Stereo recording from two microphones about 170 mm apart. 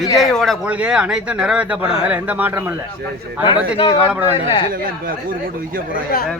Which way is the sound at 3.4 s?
30° left (ahead or behind).